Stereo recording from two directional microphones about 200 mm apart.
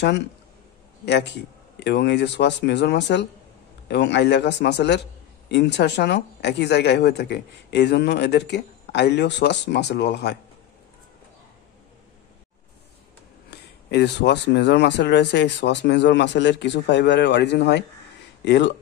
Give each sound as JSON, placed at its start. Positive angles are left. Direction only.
{"t": 1.0, "sound": "speech", "side_deg": 60}
{"t": 13.5, "sound": "speech", "side_deg": 55}